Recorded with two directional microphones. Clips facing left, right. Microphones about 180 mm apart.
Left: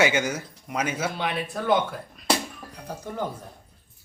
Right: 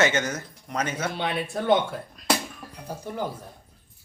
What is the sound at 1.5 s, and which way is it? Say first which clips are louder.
Speech: right 2 dB; 25° right (ahead or behind).